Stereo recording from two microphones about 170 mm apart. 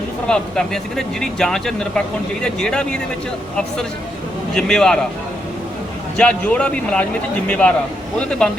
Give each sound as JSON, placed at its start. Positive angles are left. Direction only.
{"t": 0.3, "sound": "speech", "side_deg": 5}
{"t": 4.5, "sound": "speech", "side_deg": 5}
{"t": 6.1, "sound": "a man's voice", "side_deg": 5}